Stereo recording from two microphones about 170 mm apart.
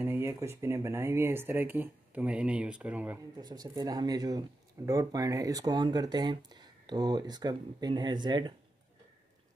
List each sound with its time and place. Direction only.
0.0 s speech: 15° right (ahead or behind)
3.3 s speech: 25° right (ahead or behind)